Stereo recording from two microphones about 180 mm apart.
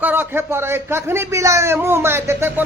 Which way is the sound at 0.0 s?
10° right (ahead or behind).